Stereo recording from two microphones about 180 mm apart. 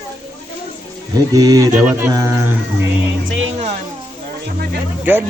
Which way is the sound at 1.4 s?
20° right (ahead or behind).